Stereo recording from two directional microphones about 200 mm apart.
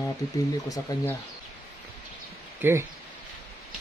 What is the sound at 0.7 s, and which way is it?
Speech, 15° left (ahead or behind).